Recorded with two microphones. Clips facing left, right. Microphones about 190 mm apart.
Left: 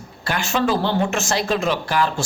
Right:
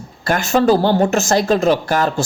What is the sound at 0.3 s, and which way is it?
A woman's voice, 45° right (ahead or behind).